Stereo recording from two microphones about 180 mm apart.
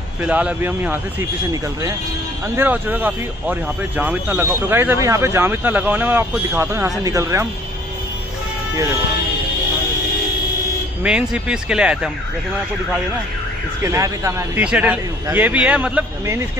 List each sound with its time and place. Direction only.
0.2 s speech: 5° right (ahead or behind)
11.1 s speech: 5° right (ahead or behind)
13.8 s speech: 15° right (ahead or behind)